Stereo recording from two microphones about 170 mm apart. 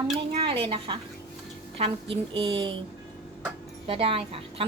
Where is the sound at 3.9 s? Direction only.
35° right (ahead or behind).